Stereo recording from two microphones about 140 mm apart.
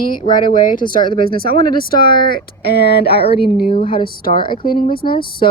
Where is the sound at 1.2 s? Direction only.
90° right.